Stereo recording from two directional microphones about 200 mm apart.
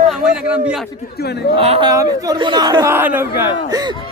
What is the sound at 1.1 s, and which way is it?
Speech, 55° left (ahead or behind).